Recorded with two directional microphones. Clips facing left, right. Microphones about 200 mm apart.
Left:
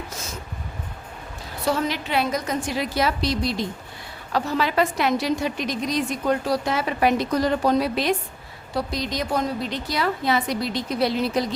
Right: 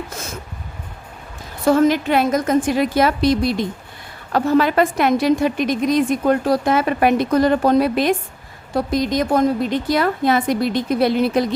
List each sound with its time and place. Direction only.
1.6 s a woman's voice: 50° right (ahead or behind)